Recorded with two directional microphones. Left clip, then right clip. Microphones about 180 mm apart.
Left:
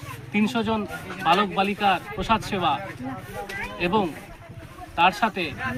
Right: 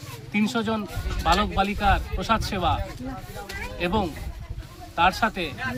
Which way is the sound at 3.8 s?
15° right (ahead or behind).